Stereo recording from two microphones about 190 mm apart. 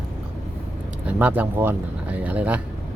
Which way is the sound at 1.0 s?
10° right (ahead or behind).